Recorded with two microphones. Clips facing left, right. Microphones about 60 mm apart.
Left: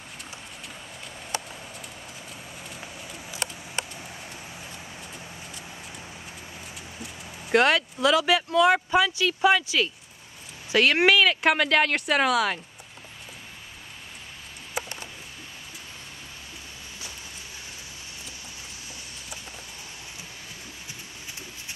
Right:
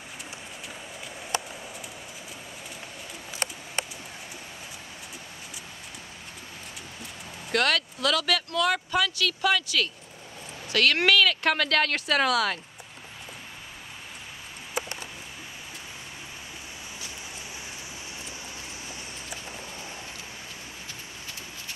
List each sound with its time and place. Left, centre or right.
7.5 s speech: left